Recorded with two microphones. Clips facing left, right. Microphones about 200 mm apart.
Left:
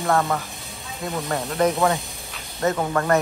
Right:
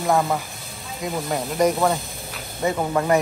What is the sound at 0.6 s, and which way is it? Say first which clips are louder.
Speech: right 1 dB; centre (ahead or behind).